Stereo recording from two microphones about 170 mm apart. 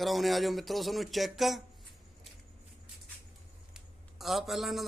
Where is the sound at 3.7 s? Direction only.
Centre (ahead or behind).